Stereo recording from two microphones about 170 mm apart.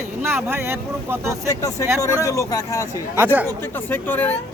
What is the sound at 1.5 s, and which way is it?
A man's voice, 20° left (ahead or behind).